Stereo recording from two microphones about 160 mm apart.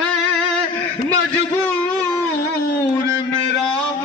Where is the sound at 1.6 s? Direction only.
10° left (ahead or behind).